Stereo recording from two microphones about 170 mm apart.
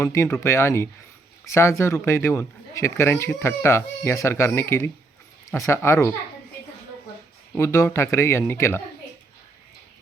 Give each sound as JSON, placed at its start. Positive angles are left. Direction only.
{"t": 0.0, "sound": "speech", "side_deg": 15}
{"t": 7.5, "sound": "speech", "side_deg": 15}